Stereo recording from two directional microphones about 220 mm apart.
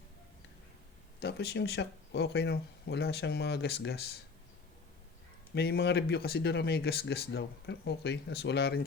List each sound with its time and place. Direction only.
1.2 s speech: 45° left (ahead or behind)
5.5 s speech: 45° left (ahead or behind)